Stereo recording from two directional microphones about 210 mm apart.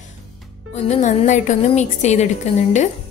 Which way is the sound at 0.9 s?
35° left (ahead or behind).